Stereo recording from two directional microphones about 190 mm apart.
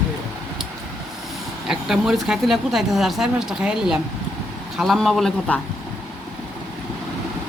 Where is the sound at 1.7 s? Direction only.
5° right (ahead or behind).